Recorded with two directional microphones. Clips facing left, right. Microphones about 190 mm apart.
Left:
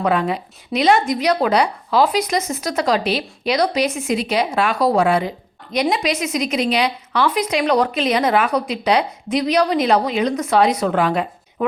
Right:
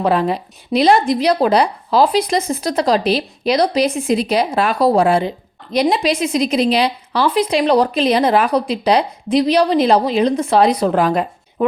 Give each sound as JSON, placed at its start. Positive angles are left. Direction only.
{"t": 0.0, "sound": "a woman's voice", "side_deg": -35}